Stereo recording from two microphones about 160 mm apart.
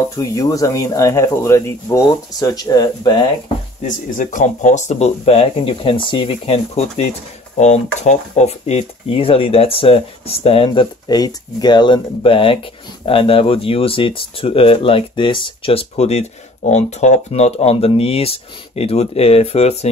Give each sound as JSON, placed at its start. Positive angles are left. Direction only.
{"t": 0.1, "sound": "speech", "side_deg": 20}
{"t": 3.8, "sound": "speech", "side_deg": 55}